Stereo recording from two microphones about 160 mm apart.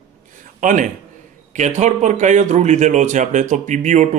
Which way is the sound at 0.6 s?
55° right (ahead or behind).